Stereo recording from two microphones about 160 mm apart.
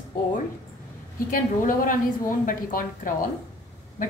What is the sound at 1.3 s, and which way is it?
A woman's voice, 60° left (ahead or behind).